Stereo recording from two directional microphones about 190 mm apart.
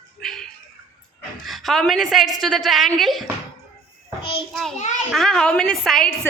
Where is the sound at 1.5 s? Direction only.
Centre (ahead or behind).